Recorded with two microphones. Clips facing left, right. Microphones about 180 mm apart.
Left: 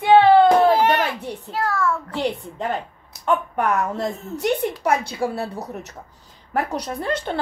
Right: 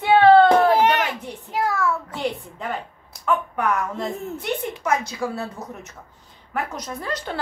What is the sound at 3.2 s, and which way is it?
A woman's voice, 40° left (ahead or behind).